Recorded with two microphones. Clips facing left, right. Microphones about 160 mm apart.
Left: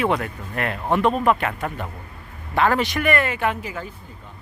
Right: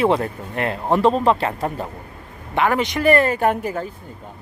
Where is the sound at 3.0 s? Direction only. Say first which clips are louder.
Right 10 dB; 35° right (ahead or behind).